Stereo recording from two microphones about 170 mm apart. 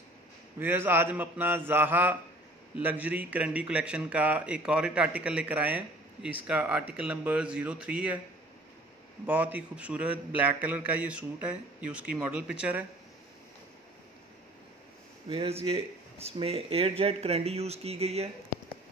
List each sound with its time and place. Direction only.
0.6 s a man's voice: 15° right (ahead or behind)
9.2 s a man's voice: 10° right (ahead or behind)
15.2 s speech: 35° right (ahead or behind)